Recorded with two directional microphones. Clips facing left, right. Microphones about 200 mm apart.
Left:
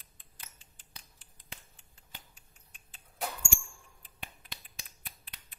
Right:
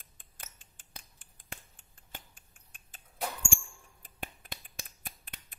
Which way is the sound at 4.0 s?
50° right (ahead or behind).